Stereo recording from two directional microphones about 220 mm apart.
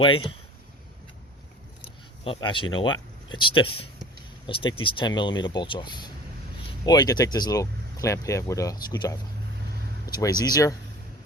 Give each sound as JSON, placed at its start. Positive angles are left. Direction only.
{"t": 0.0, "sound": "speech", "side_deg": 25}
{"t": 2.2, "sound": "speech", "side_deg": 25}